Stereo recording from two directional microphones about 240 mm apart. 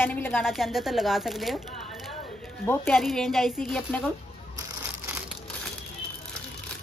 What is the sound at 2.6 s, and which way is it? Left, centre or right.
Speech, centre.